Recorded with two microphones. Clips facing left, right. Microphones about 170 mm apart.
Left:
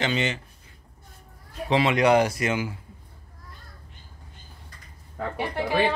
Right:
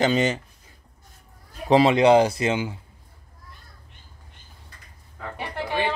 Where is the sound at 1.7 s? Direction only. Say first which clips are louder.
Right 4 dB; 35° right (ahead or behind).